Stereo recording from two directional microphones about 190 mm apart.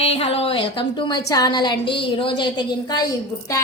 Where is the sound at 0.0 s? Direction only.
30° left (ahead or behind).